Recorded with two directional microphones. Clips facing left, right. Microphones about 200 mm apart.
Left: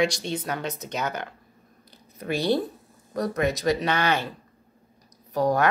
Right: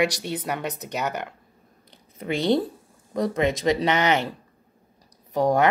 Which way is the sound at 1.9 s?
20° right (ahead or behind).